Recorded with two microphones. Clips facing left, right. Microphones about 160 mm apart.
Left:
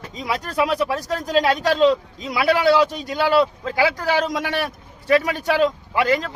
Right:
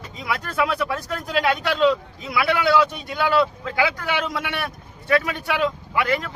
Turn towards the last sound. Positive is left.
turn(degrees=35)  # may be behind; listen again after turning